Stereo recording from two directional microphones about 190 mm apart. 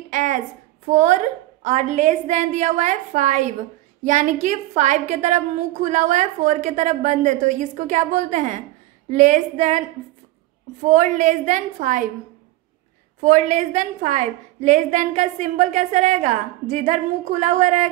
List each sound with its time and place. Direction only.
0.1 s a sound: 40° right (ahead or behind)
0.8 s a woman's voice: 40° right (ahead or behind)
13.2 s a woman's voice: 40° right (ahead or behind)